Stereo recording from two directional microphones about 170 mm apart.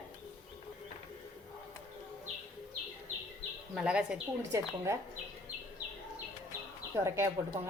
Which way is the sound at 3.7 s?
5° right (ahead or behind).